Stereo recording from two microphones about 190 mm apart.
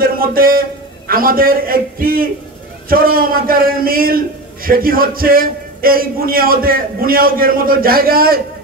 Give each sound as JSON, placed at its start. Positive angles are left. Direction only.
{"t": 0.0, "sound": "a man's voice", "side_deg": -50}